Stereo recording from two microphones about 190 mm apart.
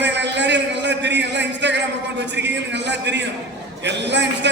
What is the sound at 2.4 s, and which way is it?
A man's voice, 65° right (ahead or behind).